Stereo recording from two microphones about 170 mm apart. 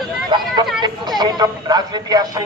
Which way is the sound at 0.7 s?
25° right (ahead or behind).